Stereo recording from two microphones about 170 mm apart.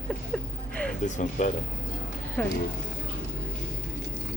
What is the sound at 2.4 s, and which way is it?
Speech, 10° left (ahead or behind).